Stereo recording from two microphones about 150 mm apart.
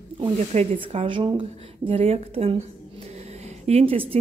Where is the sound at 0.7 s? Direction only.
35° right (ahead or behind).